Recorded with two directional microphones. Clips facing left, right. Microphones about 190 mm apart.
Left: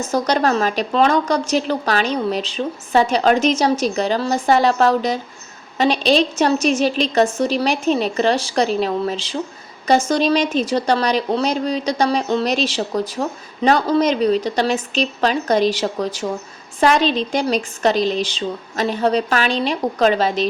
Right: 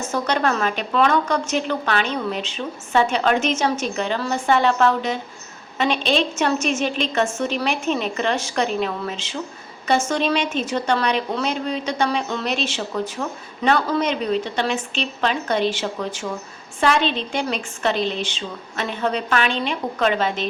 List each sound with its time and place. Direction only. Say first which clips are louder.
0.1 s a woman's voice: left 4 dB; 35° left (ahead or behind)